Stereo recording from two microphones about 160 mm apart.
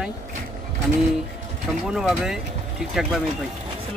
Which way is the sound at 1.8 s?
5° right (ahead or behind).